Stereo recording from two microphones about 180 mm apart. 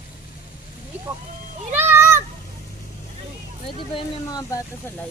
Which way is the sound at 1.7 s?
10° right (ahead or behind).